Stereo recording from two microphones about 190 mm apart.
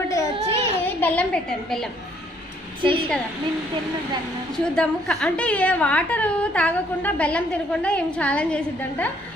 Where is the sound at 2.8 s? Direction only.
25° right (ahead or behind).